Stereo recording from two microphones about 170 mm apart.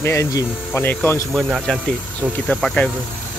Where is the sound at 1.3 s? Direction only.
Centre (ahead or behind).